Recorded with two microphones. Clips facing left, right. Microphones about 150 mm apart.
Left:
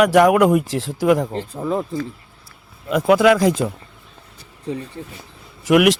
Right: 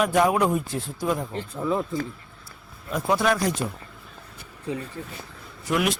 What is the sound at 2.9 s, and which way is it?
Speech, 90° left.